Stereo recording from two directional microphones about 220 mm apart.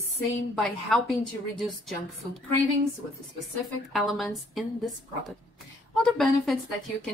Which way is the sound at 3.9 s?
Centre (ahead or behind).